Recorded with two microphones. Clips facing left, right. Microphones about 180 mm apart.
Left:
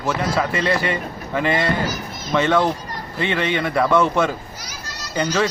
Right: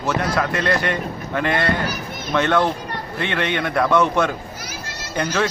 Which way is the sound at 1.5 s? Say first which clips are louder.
Even; 60° right (ahead or behind).